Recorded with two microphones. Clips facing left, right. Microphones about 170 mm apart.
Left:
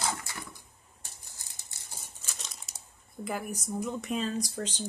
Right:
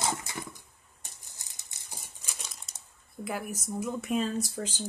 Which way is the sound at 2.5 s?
Centre (ahead or behind).